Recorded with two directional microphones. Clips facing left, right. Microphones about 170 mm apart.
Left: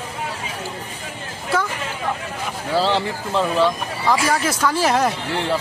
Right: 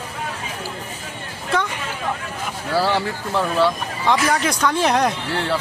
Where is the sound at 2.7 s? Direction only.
20° left (ahead or behind).